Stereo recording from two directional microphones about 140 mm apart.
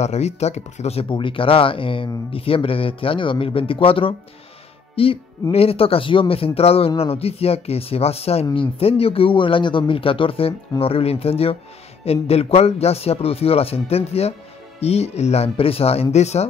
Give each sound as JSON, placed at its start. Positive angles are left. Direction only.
{"t": 0.0, "sound": "speech", "side_deg": 50}
{"t": 1.0, "sound": "speech", "side_deg": 35}